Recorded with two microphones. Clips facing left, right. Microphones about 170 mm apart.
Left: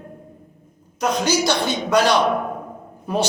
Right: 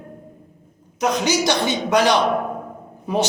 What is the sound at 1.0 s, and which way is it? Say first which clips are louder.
A man's voice: even; 15° right (ahead or behind).